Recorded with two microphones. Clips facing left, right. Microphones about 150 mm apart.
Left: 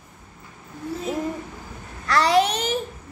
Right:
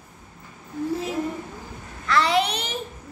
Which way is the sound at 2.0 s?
40° left (ahead or behind).